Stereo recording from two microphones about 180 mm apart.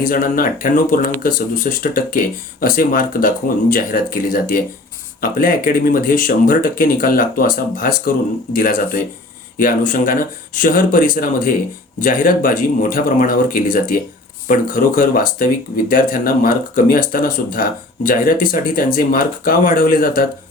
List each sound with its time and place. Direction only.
0.0 s speech: 50° left (ahead or behind)